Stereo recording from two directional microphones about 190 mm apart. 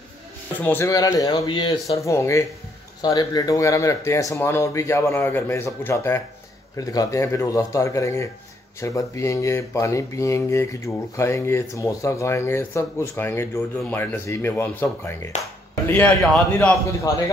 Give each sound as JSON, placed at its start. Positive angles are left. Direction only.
{"t": 0.6, "sound": "speech", "side_deg": 10}
{"t": 17.1, "sound": "speech", "side_deg": 15}